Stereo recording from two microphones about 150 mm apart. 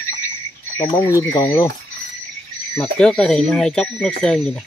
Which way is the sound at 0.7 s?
15° left (ahead or behind).